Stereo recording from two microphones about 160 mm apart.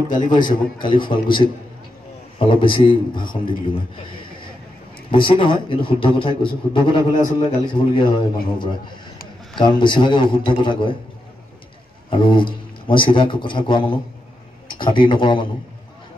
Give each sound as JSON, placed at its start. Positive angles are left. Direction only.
{"t": 0.1, "sound": "a man's voice", "side_deg": 30}
{"t": 12.1, "sound": "a man's voice", "side_deg": 30}